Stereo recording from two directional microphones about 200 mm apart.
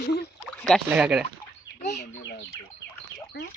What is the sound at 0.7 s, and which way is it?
Speech, centre (ahead or behind).